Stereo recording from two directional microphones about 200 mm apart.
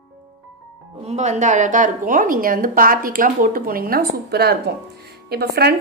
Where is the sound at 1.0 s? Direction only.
35° right (ahead or behind).